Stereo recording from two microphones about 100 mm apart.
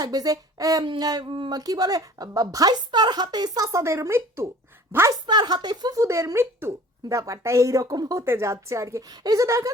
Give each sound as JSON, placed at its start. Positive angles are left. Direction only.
{"t": 0.0, "sound": "speech", "side_deg": -40}
{"t": 5.2, "sound": "speech", "side_deg": -45}
{"t": 8.2, "sound": "a woman's voice", "side_deg": -25}